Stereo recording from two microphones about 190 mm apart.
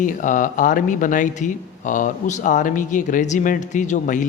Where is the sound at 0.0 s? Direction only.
45° left (ahead or behind).